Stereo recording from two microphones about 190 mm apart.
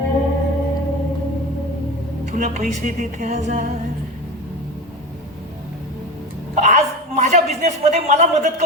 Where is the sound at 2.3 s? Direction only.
40° right (ahead or behind).